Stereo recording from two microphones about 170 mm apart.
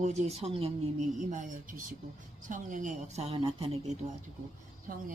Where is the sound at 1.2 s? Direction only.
45° right (ahead or behind).